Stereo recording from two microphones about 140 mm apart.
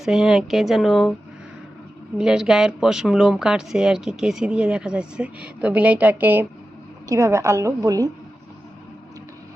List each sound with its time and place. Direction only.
0.0 s speech: 5° right (ahead or behind)
2.1 s a woman's voice: 5° right (ahead or behind); by 8.1 s 25° right (ahead or behind)